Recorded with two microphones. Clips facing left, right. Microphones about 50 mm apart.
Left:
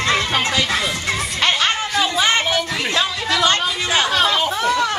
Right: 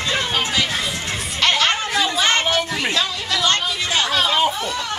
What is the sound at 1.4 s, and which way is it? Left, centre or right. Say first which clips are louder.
Music: right 1 dB; centre.